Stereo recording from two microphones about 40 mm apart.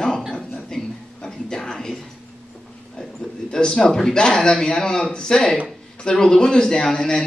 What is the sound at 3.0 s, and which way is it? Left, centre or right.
A man's voice, centre.